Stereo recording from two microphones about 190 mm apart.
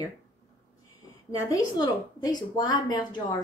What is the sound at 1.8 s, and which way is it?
A woman's voice, 20° left (ahead or behind).